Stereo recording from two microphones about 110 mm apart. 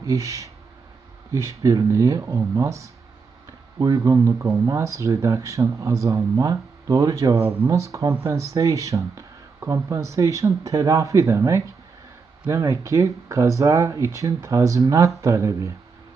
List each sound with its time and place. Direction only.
0.0 s speech: 30° right (ahead or behind)